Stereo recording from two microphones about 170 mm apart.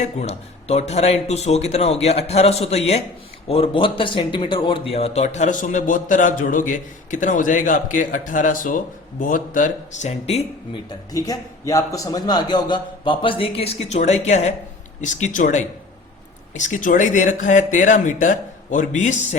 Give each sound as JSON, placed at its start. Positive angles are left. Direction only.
{"t": 0.0, "sound": "speech", "side_deg": 40}
{"t": 10.8, "sound": "a man's voice", "side_deg": 20}